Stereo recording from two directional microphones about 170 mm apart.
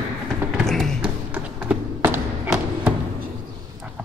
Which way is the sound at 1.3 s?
5° right (ahead or behind).